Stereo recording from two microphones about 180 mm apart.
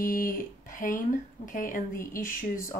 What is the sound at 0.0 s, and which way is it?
Speech, 50° left (ahead or behind).